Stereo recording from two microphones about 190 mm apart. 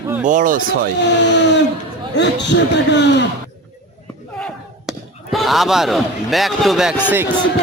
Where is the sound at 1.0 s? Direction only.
65° left (ahead or behind).